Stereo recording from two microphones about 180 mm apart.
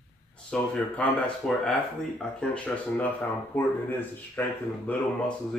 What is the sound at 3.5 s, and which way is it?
Speech, 10° left (ahead or behind).